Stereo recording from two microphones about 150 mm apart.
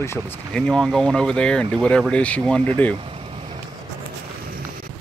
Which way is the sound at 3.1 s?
40° right (ahead or behind).